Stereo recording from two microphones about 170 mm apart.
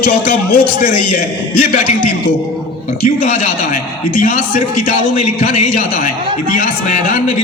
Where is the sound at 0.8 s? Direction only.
55° left (ahead or behind).